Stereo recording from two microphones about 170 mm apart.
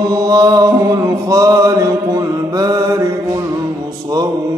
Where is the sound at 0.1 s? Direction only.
20° right (ahead or behind).